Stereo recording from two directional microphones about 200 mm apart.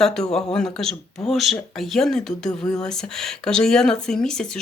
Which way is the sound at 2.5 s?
20° left (ahead or behind).